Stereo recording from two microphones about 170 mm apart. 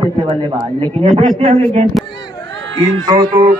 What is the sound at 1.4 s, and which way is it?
Speech, 40° right (ahead or behind).